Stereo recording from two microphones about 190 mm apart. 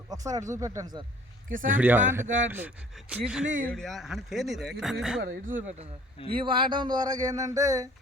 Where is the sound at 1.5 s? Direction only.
45° right (ahead or behind).